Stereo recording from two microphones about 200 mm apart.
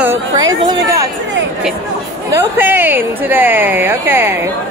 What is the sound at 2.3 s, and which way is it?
A woman's voice, 10° right (ahead or behind).